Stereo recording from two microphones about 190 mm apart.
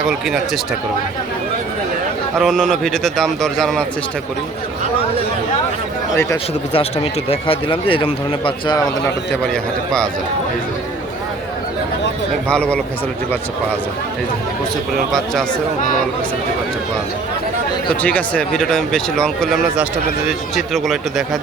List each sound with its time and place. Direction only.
0.0 s speech: 5° right (ahead or behind)
2.4 s speech: centre (ahead or behind)
6.7 s speech: 30° left (ahead or behind)
12.5 s speech: 5° left (ahead or behind)
14.9 s speech: centre (ahead or behind)
18.0 s speech: 5° left (ahead or behind)